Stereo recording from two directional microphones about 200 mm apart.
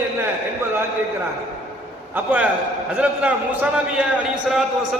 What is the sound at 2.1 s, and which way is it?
A man's voice, 10° right (ahead or behind).